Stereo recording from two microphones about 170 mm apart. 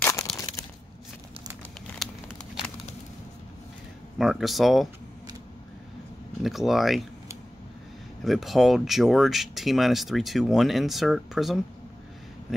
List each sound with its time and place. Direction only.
0.0 s crumpling: 20° left (ahead or behind)
4.2 s speech: centre (ahead or behind)
6.4 s speech: centre (ahead or behind)
8.2 s speech: centre (ahead or behind)